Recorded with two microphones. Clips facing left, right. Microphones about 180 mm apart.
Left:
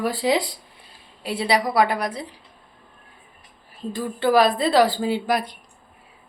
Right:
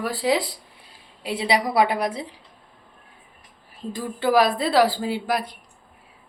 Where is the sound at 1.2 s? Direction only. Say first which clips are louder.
Left 1 dB; 20° right (ahead or behind).